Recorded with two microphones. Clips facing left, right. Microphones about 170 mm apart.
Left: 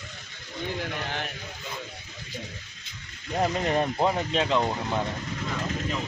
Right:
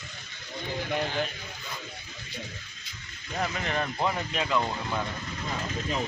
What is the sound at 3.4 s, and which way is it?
Speech, 35° left (ahead or behind).